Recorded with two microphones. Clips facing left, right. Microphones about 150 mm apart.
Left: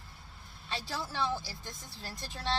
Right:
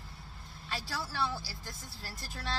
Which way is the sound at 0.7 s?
20° left (ahead or behind).